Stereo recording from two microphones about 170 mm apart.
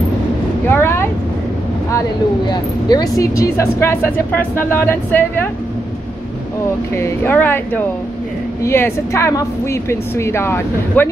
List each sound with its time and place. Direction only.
0.7 s vehicle: 15° left (ahead or behind)
2.5 s speech: 20° left (ahead or behind)
7.0 s speech: 10° left (ahead or behind)